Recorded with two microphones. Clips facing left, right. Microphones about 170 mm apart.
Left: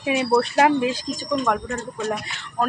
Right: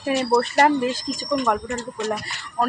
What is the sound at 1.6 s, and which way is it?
Speech, 80° right.